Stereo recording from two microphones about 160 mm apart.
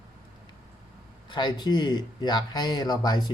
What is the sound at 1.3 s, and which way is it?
Speech, 30° left (ahead or behind).